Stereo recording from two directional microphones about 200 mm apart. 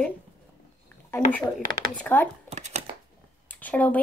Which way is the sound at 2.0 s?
10° left (ahead or behind).